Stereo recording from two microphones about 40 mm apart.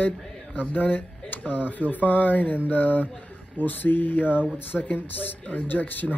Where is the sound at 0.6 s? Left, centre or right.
Left.